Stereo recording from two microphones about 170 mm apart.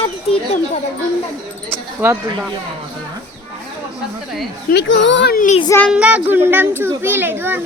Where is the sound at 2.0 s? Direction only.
10° right (ahead or behind).